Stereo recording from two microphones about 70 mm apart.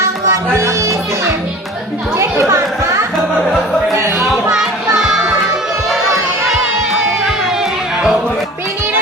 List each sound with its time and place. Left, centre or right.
0.3 s music: right
2.1 s chatter: right
3.9 s music: right
4.9 s music: centre